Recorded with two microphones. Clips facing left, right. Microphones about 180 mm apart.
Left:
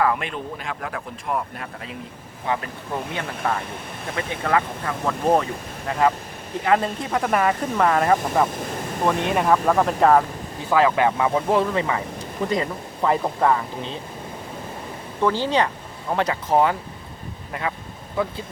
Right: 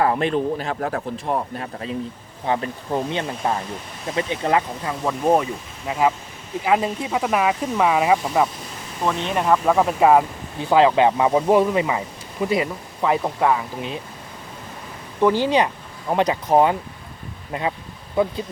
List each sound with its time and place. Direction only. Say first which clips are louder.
0.0 s speech: right 4 dB; 30° right (ahead or behind)
4.9 s speech: right 1 dB; 10° right (ahead or behind)
10.7 s speech: right 3 dB; 20° right (ahead or behind)
11.3 s speech: right 4 dB; 10° right (ahead or behind)
12.5 s speech: right 3 dB; 5° right (ahead or behind)
15.2 s speech: right 3 dB; 15° right (ahead or behind)